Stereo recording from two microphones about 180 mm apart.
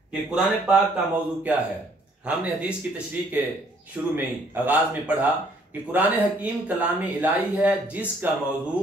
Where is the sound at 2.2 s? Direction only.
10° right (ahead or behind).